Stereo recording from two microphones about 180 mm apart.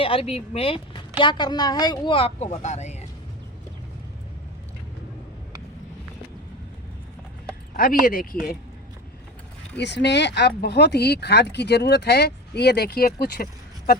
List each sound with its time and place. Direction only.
0.0 s speech: 30° left (ahead or behind)
7.8 s speech: 50° left (ahead or behind)
9.7 s speech: 70° left (ahead or behind); by 14.0 s 55° left (ahead or behind)